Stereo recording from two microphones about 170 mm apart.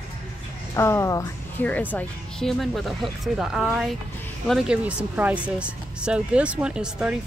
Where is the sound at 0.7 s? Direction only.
15° left (ahead or behind).